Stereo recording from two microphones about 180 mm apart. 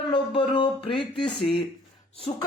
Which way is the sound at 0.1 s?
25° left (ahead or behind).